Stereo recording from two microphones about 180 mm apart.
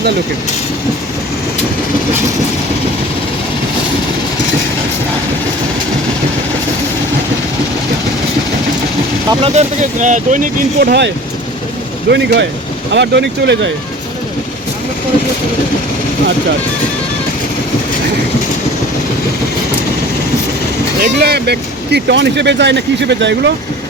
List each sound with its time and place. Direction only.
9.4 s speech: 40° right (ahead or behind); by 13.7 s 75° right (ahead or behind)
21.0 s speech: 65° right (ahead or behind)